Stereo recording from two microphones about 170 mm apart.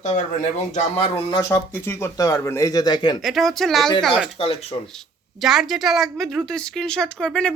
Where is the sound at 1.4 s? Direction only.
15° left (ahead or behind).